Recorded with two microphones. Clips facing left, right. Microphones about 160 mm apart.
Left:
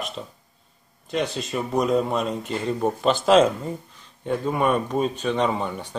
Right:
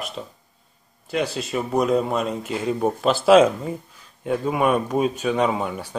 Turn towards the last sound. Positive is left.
turn(degrees=-5)  # may be behind; listen again after turning